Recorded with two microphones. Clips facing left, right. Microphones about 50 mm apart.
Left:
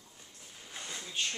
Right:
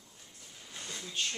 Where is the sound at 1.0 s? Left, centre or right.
Centre.